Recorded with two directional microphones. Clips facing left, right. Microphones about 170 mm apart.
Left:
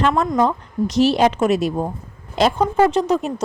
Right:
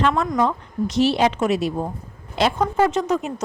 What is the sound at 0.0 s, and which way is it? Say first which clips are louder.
A woman's voice: left 2 dB; 40° left (ahead or behind).